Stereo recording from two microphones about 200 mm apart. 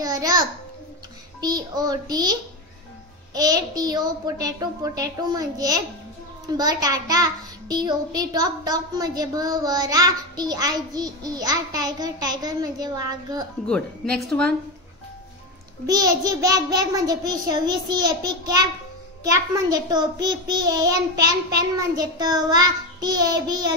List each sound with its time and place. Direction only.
0.0 s a sound: 20° right (ahead or behind)
1.4 s a child's voice: 20° right (ahead or behind)
3.3 s a child's voice: 20° right (ahead or behind)
13.7 s a woman's voice: 5° left (ahead or behind)
15.9 s a child's voice: 20° right (ahead or behind)